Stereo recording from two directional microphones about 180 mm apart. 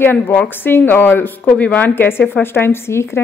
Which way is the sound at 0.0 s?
10° left (ahead or behind).